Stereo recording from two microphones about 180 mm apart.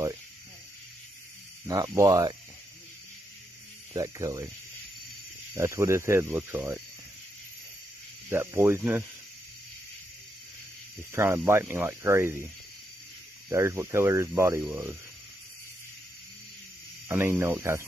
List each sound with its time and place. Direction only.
1.7 s speech: 20° right (ahead or behind)
3.9 s speech: 15° right (ahead or behind)
5.5 s speech: 15° right (ahead or behind)
8.3 s speech: 15° right (ahead or behind)
11.1 s speech: 15° right (ahead or behind)
13.5 s speech: 15° right (ahead or behind)
17.1 s speech: 15° right (ahead or behind)